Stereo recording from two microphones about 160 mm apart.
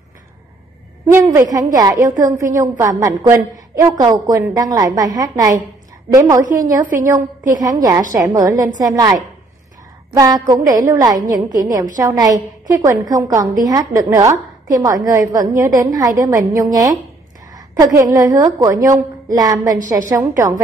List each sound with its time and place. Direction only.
1.1 s a woman's voice: 15° right (ahead or behind)
6.4 s a woman's voice: 55° right (ahead or behind)
7.6 s a woman's voice: 20° right (ahead or behind)
10.1 s a woman's voice: 25° right (ahead or behind)